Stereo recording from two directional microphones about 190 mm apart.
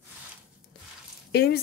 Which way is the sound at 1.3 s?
55° left (ahead or behind).